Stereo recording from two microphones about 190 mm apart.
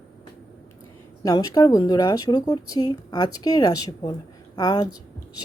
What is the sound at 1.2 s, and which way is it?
Speech, 20° left (ahead or behind).